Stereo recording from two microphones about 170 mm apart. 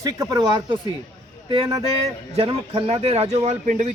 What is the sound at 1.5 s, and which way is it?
Speech, 35° right (ahead or behind).